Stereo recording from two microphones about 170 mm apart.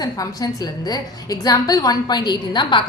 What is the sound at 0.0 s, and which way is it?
A woman's voice, 20° left (ahead or behind).